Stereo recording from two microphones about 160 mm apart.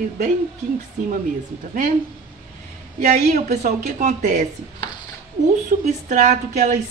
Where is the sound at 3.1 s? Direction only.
70° right (ahead or behind); by 4.5 s 50° right (ahead or behind).